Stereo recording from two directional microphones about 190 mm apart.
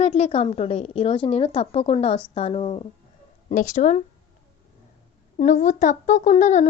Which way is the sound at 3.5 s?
40° left (ahead or behind).